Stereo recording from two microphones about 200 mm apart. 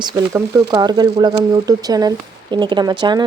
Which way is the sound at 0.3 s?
20° right (ahead or behind).